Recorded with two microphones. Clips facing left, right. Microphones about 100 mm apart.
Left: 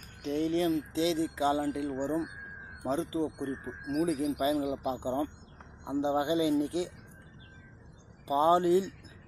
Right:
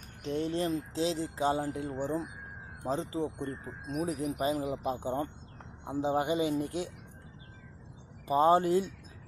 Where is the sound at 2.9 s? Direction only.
35° right (ahead or behind).